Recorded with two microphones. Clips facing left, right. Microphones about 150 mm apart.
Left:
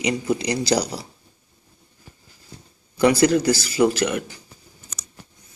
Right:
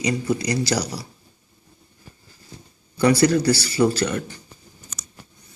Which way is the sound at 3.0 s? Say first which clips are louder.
Left 1 dB; 15° left (ahead or behind).